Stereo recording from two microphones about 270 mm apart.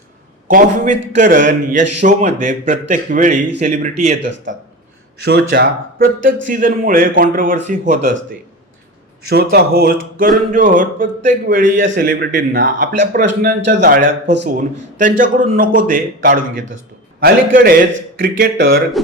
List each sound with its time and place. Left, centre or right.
0.4 s speech: right
4.2 s a man's voice: right
9.3 s a man's voice: right
15.2 s a man's voice: right
18.5 s speech: right